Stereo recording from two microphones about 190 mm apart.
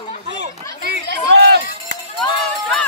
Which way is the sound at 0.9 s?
55° right (ahead or behind).